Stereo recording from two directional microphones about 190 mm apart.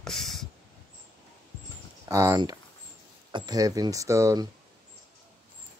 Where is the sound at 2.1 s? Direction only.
15° right (ahead or behind).